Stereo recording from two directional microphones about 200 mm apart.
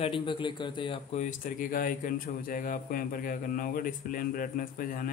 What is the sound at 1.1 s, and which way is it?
A man's voice, 40° left (ahead or behind).